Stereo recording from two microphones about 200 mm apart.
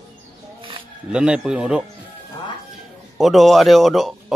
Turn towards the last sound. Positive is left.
turn(degrees=0)  # may be behind; listen again after turning